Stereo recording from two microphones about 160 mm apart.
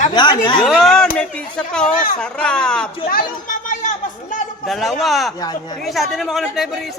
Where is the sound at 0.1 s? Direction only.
30° left (ahead or behind).